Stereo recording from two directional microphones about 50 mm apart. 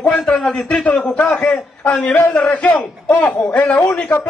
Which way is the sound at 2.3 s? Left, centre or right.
Left.